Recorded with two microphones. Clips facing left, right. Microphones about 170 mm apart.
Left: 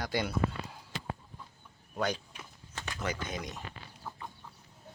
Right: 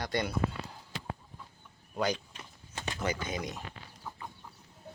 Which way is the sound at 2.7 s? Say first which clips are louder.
Right 3 dB; 25° right (ahead or behind).